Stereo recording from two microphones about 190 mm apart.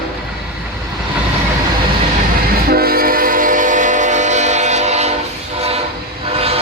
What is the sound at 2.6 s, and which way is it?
Train, 50° right (ahead or behind).